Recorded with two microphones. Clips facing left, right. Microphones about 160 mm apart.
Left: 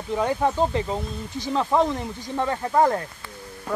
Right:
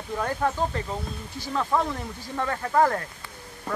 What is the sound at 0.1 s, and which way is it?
Speech, 15° left (ahead or behind).